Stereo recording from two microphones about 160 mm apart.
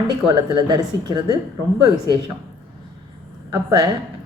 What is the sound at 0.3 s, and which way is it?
A woman's voice, 30° right (ahead or behind).